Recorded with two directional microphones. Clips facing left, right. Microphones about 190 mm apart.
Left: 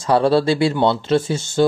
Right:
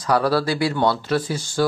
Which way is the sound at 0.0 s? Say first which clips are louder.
Left 4 dB; 25° left (ahead or behind).